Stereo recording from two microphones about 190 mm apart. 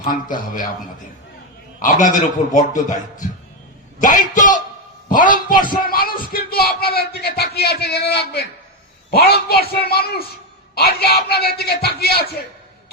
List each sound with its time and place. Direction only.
0.0 s a man's voice: 45° left (ahead or behind)
1.8 s a man's voice: 45° left (ahead or behind)